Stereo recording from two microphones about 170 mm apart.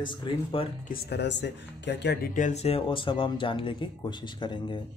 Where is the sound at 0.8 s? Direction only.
65° left (ahead or behind); by 2.3 s 85° left.